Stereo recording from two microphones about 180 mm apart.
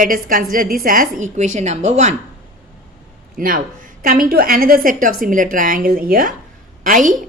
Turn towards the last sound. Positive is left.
turn(degrees=-50)  # may be behind; listen again after turning